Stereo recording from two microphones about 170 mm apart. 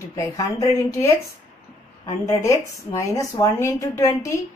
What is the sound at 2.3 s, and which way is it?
A woman's voice, 20° left (ahead or behind).